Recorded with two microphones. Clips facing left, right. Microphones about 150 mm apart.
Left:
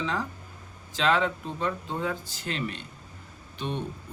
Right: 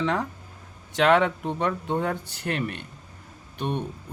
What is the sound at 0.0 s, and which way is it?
Speech, 60° right (ahead or behind).